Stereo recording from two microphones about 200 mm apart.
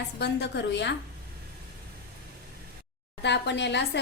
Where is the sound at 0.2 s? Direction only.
60° left (ahead or behind).